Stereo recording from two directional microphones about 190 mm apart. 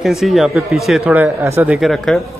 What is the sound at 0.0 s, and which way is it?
Speech, centre (ahead or behind).